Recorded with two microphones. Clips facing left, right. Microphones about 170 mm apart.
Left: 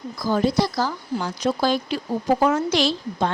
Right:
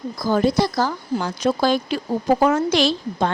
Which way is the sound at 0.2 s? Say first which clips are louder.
Right 2 dB; 50° right (ahead or behind).